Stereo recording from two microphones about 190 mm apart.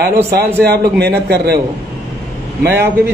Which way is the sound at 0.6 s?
55° right (ahead or behind).